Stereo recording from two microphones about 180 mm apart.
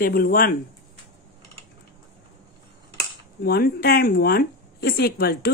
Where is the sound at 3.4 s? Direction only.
60° left (ahead or behind).